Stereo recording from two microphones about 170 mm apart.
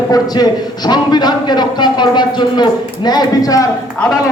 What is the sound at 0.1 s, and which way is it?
A man's voice, 25° left (ahead or behind).